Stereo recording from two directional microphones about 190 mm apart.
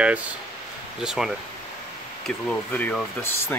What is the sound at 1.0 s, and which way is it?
Speech, 5° right (ahead or behind).